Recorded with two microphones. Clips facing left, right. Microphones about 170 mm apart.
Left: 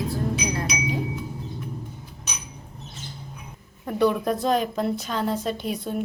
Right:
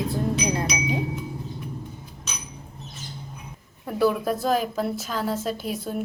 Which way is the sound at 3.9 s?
Centre (ahead or behind).